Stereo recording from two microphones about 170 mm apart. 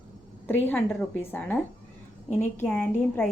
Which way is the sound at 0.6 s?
10° left (ahead or behind).